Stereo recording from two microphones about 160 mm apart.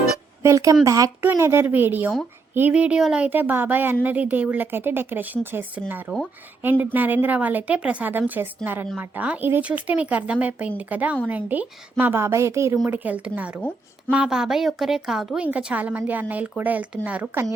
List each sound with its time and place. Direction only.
0.4 s a woman's voice: 20° right (ahead or behind)